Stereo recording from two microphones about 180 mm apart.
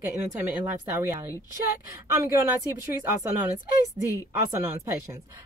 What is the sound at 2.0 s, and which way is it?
Speech, 15° right (ahead or behind).